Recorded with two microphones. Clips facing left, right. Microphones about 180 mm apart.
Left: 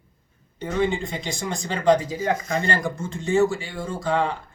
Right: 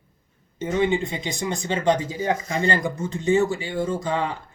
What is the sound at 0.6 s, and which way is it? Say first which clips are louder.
Speech: right 2 dB; 20° right (ahead or behind).